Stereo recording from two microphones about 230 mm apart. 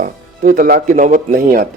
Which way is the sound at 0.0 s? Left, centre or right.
Right.